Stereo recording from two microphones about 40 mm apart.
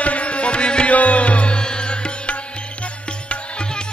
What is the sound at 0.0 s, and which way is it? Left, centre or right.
Music, left.